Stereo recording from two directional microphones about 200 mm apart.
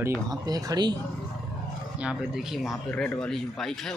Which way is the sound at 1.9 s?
5° right (ahead or behind).